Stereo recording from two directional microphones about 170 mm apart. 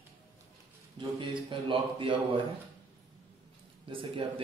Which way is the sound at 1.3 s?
30° right (ahead or behind).